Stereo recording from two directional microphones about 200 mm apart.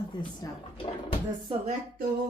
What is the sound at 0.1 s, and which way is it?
Speech, 25° left (ahead or behind).